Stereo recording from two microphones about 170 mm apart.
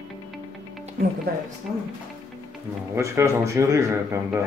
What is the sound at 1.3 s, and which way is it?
Speech, 65° right (ahead or behind).